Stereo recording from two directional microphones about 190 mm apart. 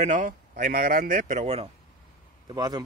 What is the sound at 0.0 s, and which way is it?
Speech, 40° right (ahead or behind).